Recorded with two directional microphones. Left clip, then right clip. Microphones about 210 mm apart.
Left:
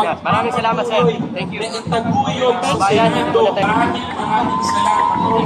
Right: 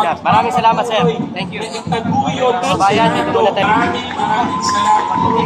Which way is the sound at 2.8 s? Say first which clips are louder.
Right 2 dB; 50° right (ahead or behind).